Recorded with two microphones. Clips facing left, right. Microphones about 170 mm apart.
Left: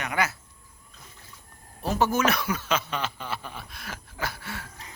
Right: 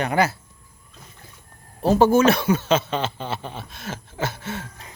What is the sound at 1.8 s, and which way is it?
Speech, 30° right (ahead or behind).